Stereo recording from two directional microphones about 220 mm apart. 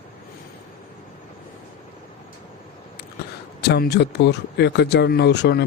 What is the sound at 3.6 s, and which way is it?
Speech, 50° left (ahead or behind).